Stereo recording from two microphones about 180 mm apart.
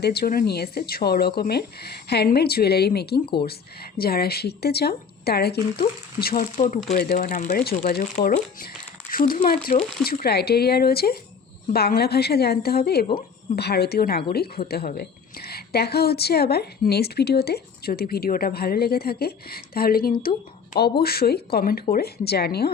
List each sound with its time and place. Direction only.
0.0 s a woman's voice: 60° left (ahead or behind)